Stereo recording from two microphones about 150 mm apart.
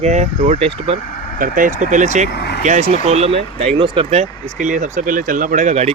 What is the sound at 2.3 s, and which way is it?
Speech, 90° left.